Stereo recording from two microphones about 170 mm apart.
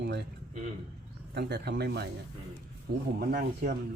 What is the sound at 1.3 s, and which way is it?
Speech, 80° right.